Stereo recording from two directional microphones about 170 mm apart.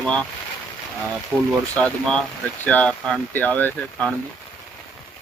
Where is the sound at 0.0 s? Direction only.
5° left (ahead or behind).